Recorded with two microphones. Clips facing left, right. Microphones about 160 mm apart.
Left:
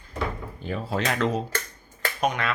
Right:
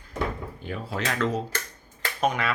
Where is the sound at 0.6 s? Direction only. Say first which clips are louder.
Left 3 dB; 25° left (ahead or behind).